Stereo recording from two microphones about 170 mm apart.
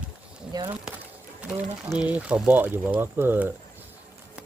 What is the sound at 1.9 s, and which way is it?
Speech, 5° right (ahead or behind).